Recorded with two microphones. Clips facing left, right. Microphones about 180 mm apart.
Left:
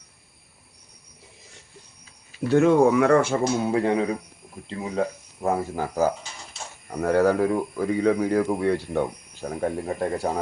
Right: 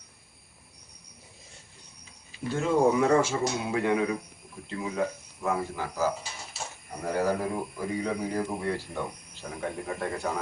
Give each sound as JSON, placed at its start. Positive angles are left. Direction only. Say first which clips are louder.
{"t": 2.5, "sound": "speech", "louder": "left 7 dB", "side_deg": 70}
{"t": 3.7, "sound": "a man's voice", "louder": "left 4 dB", "side_deg": 35}
{"t": 7.0, "sound": "speech", "louder": "left 8 dB", "side_deg": 75}